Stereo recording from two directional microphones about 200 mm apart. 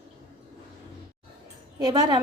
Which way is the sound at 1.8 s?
20° right (ahead or behind).